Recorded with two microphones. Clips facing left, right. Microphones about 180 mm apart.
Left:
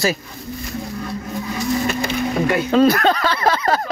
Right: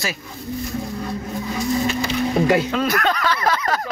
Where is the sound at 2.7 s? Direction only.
30° left (ahead or behind).